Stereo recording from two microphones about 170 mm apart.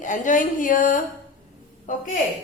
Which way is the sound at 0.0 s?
50° left (ahead or behind).